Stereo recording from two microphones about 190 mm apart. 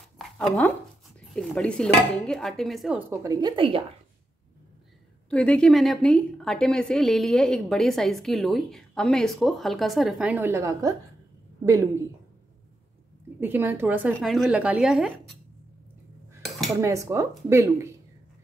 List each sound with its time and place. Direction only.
0.2 s a sound: centre (ahead or behind)
1.3 s a woman's voice: 5° left (ahead or behind)
3.1 s a woman's voice: 20° right (ahead or behind)
5.3 s a woman's voice: 5° left (ahead or behind); by 12.0 s 15° right (ahead or behind)
13.4 s a woman's voice: 10° right (ahead or behind)
16.8 s a woman's voice: 15° right (ahead or behind)